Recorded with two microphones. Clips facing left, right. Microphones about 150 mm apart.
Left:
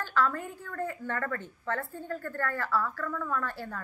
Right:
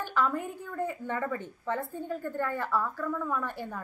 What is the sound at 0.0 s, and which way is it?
A woman's voice, 15° right (ahead or behind).